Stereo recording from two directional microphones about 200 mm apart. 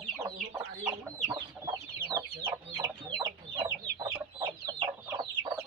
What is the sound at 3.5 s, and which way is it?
Chicken, 20° right (ahead or behind).